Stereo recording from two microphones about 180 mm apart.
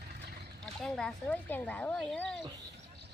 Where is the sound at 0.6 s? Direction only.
5° left (ahead or behind).